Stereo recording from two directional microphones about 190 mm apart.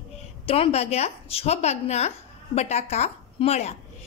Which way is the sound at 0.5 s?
30° left (ahead or behind).